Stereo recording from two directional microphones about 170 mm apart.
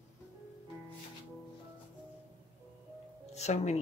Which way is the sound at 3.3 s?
40° left (ahead or behind).